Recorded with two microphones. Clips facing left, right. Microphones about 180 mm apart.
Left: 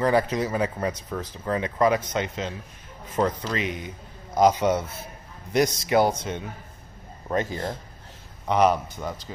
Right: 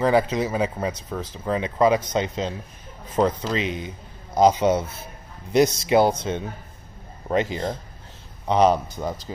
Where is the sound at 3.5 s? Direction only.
25° right (ahead or behind).